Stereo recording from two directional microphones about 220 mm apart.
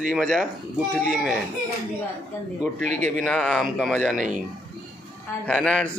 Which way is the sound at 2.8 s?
35° right (ahead or behind).